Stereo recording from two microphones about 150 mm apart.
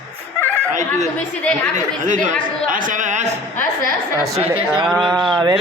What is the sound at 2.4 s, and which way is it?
Speech, 65° right (ahead or behind).